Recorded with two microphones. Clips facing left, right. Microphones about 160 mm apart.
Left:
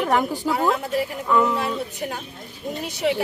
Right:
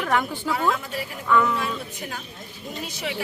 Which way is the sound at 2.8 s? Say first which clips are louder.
Left 10 dB; 55° left (ahead or behind).